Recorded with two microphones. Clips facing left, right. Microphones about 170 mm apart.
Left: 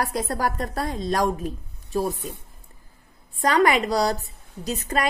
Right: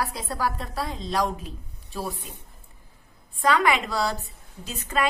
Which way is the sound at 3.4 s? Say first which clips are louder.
Left 3 dB; 40° left (ahead or behind).